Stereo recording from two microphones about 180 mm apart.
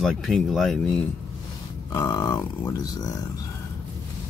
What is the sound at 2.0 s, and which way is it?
Speech, 20° left (ahead or behind).